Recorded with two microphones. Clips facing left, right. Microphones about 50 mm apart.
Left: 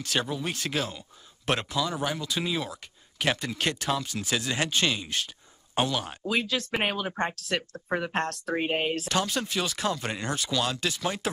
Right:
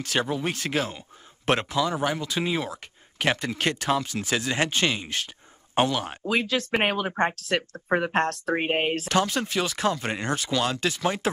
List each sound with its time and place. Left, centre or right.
0.0 s speech: right
6.7 s speech: right
7.4 s speech: right
8.5 s speech: right
8.9 s speech: right